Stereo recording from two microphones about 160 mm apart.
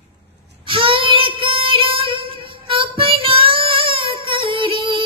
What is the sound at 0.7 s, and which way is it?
Child singing, 30° right (ahead or behind).